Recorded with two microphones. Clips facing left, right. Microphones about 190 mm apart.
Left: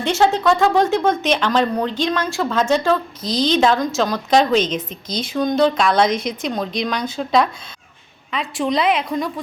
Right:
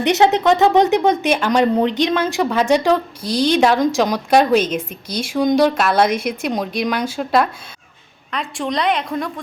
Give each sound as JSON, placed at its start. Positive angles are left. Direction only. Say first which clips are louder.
{"t": 0.0, "sound": "a woman's voice", "louder": "right 2 dB", "side_deg": -20}